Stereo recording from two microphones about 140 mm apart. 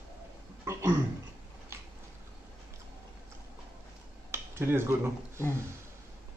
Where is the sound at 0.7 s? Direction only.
20° right (ahead or behind).